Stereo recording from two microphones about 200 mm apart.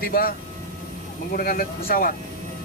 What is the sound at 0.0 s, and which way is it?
Speech, 50° left (ahead or behind).